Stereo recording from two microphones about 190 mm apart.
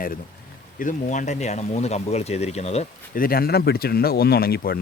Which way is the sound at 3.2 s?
50° left (ahead or behind).